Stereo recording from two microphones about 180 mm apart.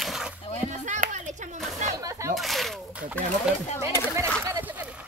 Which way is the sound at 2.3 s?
Centre (ahead or behind).